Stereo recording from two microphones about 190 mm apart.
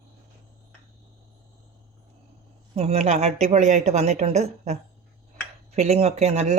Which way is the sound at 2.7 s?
35° right (ahead or behind).